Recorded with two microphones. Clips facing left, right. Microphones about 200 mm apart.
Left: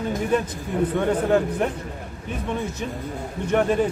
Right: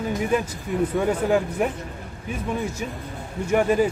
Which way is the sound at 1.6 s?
5° right (ahead or behind).